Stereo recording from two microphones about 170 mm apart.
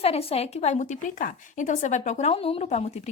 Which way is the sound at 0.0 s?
35° left (ahead or behind).